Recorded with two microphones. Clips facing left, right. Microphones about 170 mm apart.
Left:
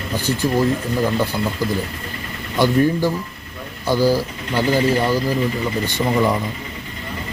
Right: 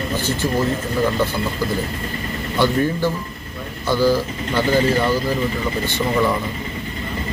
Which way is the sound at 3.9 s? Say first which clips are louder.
Even; 10° left (ahead or behind).